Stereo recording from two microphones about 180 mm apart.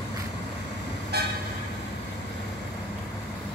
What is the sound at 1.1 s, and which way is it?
Vehicle, 65° right (ahead or behind).